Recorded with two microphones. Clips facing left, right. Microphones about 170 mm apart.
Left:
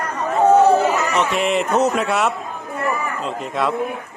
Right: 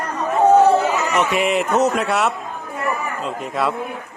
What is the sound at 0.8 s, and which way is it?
A man's voice, 5° right (ahead or behind).